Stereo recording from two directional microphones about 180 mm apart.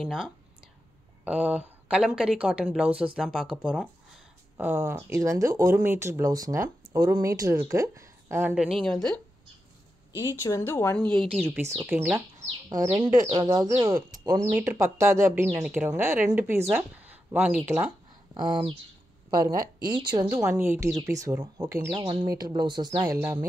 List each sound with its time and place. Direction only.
0.0 s a woman's voice: centre (ahead or behind)
4.6 s speech: 10° right (ahead or behind)
8.8 s a woman's voice: 5° left (ahead or behind)
10.1 s a woman's voice: 15° left (ahead or behind)
11.5 s speech: 10° right (ahead or behind)
13.3 s speech: 25° right (ahead or behind)
18.3 s speech: 25° right (ahead or behind)
21.9 s speech: 30° right (ahead or behind)